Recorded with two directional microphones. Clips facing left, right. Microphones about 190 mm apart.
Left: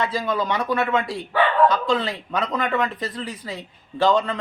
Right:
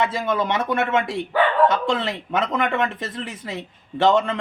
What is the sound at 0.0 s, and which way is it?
Speech, 25° right (ahead or behind).